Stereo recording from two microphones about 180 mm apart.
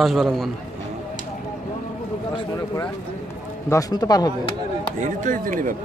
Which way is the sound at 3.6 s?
20° left (ahead or behind).